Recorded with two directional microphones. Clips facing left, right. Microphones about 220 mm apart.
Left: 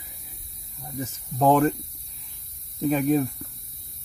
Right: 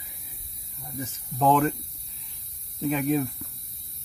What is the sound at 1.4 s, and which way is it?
Speech, 45° left (ahead or behind).